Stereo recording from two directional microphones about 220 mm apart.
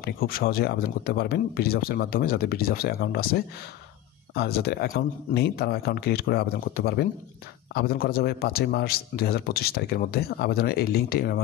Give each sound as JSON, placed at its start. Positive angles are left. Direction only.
{"t": 0.0, "sound": "speech", "side_deg": 45}